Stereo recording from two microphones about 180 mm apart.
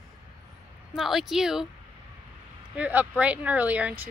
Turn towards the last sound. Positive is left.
turn(degrees=-10)  # may be behind; listen again after turning